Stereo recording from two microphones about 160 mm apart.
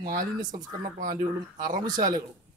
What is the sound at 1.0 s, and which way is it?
Speech, 60° right (ahead or behind).